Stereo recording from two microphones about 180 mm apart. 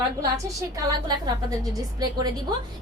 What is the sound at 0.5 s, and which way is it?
A woman's voice, 20° right (ahead or behind).